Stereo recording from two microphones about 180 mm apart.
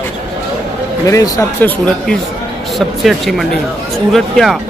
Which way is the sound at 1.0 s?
20° left (ahead or behind).